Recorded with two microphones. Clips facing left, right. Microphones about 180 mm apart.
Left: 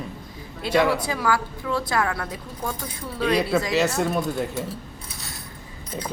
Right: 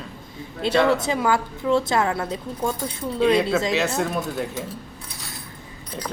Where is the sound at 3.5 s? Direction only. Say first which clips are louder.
Even; 5° right (ahead or behind).